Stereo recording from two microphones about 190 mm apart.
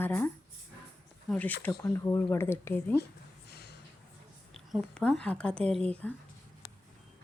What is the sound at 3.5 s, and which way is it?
Gasp, 60° left (ahead or behind).